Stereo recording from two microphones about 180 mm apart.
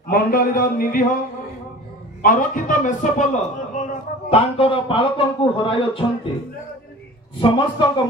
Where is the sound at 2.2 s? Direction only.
50° left (ahead or behind); by 6.0 s 30° left (ahead or behind).